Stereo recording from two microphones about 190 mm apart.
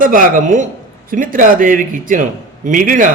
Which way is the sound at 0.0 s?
45° right (ahead or behind).